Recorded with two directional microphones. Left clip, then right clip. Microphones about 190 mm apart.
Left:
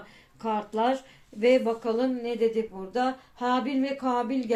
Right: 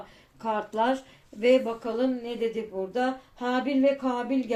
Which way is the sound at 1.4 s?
30° left (ahead or behind).